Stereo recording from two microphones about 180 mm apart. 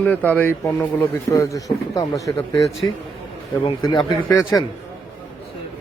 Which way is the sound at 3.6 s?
25° left (ahead or behind).